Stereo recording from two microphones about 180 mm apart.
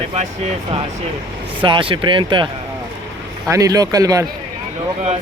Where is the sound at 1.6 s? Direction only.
30° right (ahead or behind).